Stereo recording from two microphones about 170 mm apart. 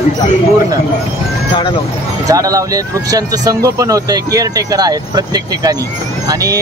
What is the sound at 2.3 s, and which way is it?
Speech, 20° right (ahead or behind).